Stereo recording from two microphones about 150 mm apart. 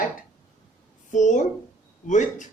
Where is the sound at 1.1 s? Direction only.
55° left (ahead or behind).